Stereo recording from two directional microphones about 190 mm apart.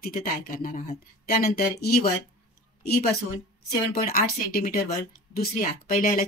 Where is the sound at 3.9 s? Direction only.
55° left (ahead or behind).